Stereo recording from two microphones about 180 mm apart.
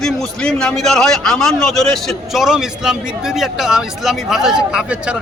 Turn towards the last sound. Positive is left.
turn(degrees=-5)  # may be behind; listen again after turning